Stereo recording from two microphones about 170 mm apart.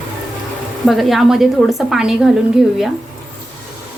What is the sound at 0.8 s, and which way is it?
Speech, centre (ahead or behind).